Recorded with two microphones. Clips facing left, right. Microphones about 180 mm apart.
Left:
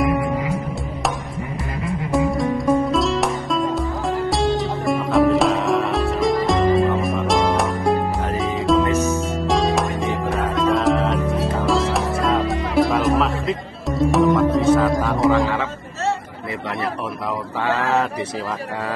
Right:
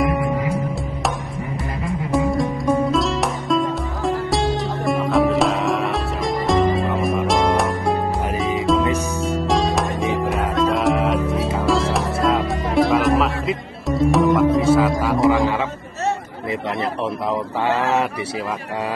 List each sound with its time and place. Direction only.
2.0 s music: centre (ahead or behind)
8.8 s music: 10° right (ahead or behind)
9.5 s music: centre (ahead or behind)
17.6 s a sound: 15° right (ahead or behind)